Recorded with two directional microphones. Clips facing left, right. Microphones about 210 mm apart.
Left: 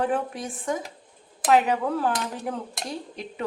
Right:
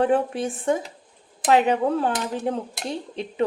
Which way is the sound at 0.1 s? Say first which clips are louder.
Right 6 dB; 30° right (ahead or behind).